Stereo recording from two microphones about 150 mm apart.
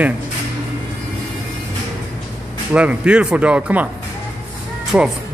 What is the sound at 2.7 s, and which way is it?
Speech, 10° right (ahead or behind).